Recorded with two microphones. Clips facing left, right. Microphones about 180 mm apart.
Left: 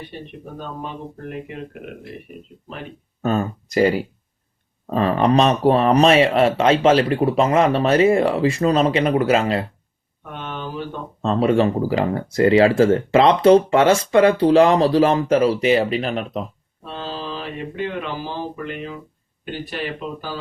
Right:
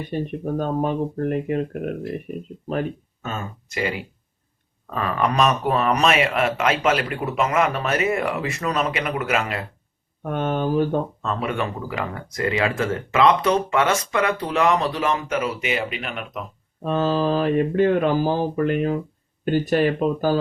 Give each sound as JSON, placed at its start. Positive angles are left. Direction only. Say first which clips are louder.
{"t": 0.0, "sound": "speech", "louder": "right 9 dB", "side_deg": -45}
{"t": 3.2, "sound": "speech", "louder": "left 15 dB", "side_deg": 35}
{"t": 10.2, "sound": "speech", "louder": "right 8 dB", "side_deg": -45}
{"t": 11.2, "sound": "speech", "louder": "left 8 dB", "side_deg": 30}
{"t": 16.8, "sound": "speech", "louder": "right 9 dB", "side_deg": -50}